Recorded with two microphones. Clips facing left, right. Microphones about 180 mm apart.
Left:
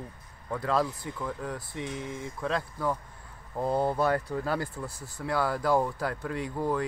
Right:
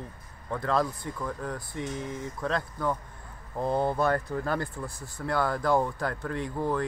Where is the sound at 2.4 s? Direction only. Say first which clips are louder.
Even; 5° left (ahead or behind).